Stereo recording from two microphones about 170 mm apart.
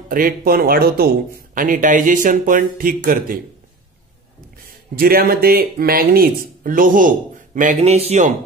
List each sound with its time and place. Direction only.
0.1 s speech: 55° right (ahead or behind)
4.6 s speech: 60° right (ahead or behind); by 8.4 s 45° right (ahead or behind)